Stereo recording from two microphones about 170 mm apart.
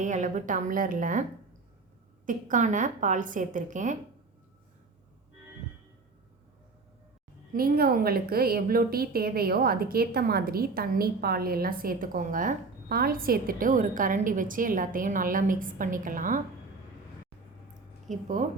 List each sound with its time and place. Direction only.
0.0 s a woman's voice: 45° right (ahead or behind)
2.2 s a woman's voice: 50° right (ahead or behind)
7.5 s a woman's voice: 60° right (ahead or behind)
18.1 s a woman's voice: 50° right (ahead or behind)